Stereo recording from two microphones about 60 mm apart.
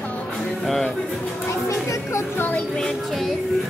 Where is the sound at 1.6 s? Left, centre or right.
Left.